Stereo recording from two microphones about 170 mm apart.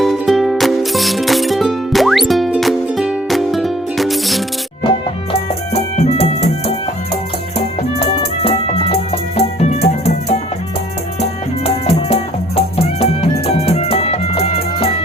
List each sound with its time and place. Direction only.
0.0 s music: centre (ahead or behind)
5.3 s music: 35° left (ahead or behind)
7.8 s music: 40° left (ahead or behind)
11.6 s music: 35° left (ahead or behind)